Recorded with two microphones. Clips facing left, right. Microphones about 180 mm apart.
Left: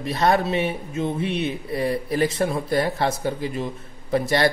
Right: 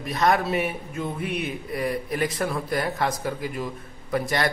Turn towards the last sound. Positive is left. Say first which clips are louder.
# left 5 dB
turn(degrees=30)  # may be behind; listen again after turning